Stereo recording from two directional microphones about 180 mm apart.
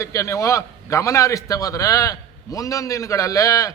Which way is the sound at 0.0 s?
15° left (ahead or behind).